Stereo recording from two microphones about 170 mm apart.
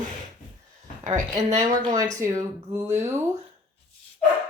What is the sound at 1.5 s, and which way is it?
Speech, 20° right (ahead or behind).